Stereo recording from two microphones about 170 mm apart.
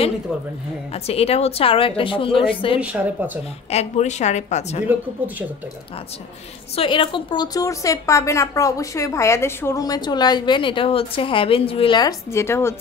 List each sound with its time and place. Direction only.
0.9 s a woman's voice: 35° left (ahead or behind)
2.8 s speech: 10° right (ahead or behind)
3.7 s a woman's voice: 40° left (ahead or behind)
6.7 s a woman's voice: 30° left (ahead or behind); by 12.7 s 15° left (ahead or behind)